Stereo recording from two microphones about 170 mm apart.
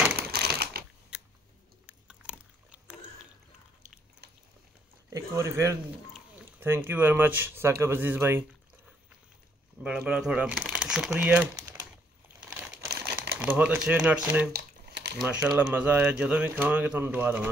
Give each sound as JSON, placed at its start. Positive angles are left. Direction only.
{"t": 0.1, "sound": "typewriter", "side_deg": -70}
{"t": 1.9, "sound": "biting", "side_deg": -5}
{"t": 4.2, "sound": "biting", "side_deg": -75}
{"t": 5.1, "sound": "speech", "side_deg": -15}
{"t": 9.8, "sound": "speech", "side_deg": -5}
{"t": 12.4, "sound": "crumpling", "side_deg": -5}
{"t": 12.9, "sound": "crumpling", "side_deg": -70}
{"t": 13.4, "sound": "speech", "side_deg": -5}
{"t": 14.5, "sound": "a sound", "side_deg": -70}
{"t": 15.4, "sound": "speech", "side_deg": -5}